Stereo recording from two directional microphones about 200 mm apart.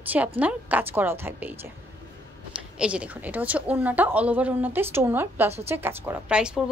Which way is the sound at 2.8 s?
5° right (ahead or behind).